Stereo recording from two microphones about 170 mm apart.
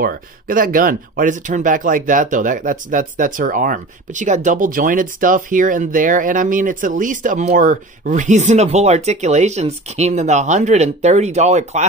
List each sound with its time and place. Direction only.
0.0 s speech: 55° right (ahead or behind)